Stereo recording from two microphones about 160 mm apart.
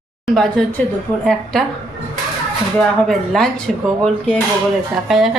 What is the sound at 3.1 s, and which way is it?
Speech, centre (ahead or behind).